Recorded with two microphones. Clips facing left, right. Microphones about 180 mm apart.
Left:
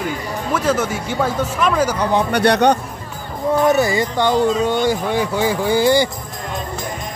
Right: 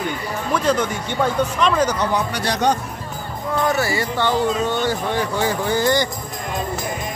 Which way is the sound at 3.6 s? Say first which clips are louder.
Left 4 dB; 20° left (ahead or behind).